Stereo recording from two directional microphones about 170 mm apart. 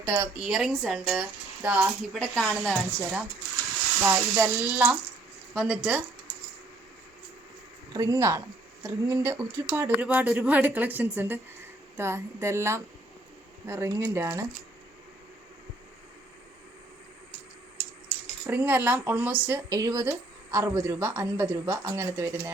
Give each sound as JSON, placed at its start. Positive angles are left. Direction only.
{"t": 0.0, "sound": "a woman's voice", "side_deg": -10}
{"t": 2.1, "sound": "speech", "side_deg": 10}
{"t": 4.0, "sound": "a woman's voice", "side_deg": -10}
{"t": 7.9, "sound": "a woman's voice", "side_deg": -20}
{"t": 18.4, "sound": "a woman's voice", "side_deg": -10}